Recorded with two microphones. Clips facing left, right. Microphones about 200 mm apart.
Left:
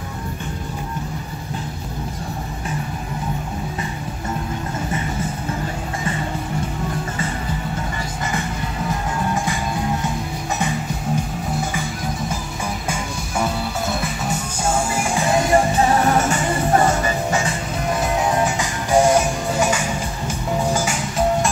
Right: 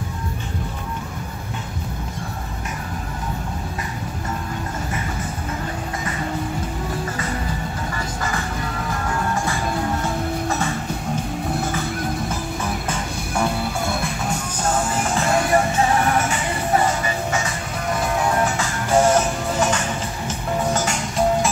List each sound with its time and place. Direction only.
13.4 s music: centre (ahead or behind); by 15.6 s 20° left (ahead or behind)
16.1 s music: 40° left (ahead or behind)
17.3 s music: 30° left (ahead or behind)
18.2 s music: 20° left (ahead or behind)